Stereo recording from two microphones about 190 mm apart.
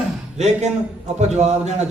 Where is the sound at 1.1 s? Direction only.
35° right (ahead or behind).